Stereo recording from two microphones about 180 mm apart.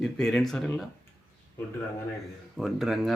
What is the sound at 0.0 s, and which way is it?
Speech, 5° left (ahead or behind).